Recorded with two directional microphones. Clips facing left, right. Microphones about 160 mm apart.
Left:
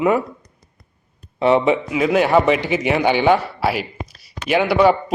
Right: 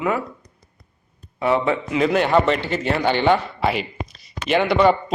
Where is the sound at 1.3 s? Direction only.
25° left (ahead or behind).